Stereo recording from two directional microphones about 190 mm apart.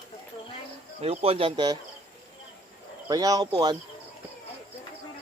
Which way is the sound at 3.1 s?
20° right (ahead or behind).